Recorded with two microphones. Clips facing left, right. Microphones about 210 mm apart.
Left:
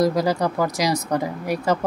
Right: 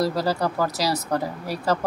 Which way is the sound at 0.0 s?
20° left (ahead or behind).